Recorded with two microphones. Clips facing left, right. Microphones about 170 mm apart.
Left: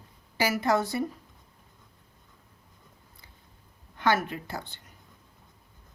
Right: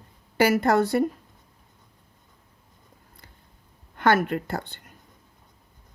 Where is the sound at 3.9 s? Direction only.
55° right (ahead or behind).